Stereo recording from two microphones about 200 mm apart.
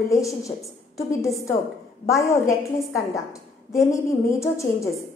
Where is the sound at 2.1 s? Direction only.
15° left (ahead or behind).